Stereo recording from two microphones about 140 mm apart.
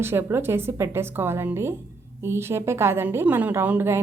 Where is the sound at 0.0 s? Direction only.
15° right (ahead or behind).